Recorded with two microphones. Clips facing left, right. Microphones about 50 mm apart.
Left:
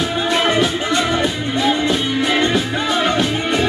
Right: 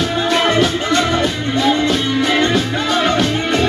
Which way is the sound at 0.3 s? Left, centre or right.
Left.